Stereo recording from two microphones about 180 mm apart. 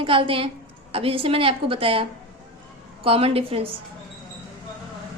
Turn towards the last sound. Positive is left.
turn(degrees=-30)  # may be behind; listen again after turning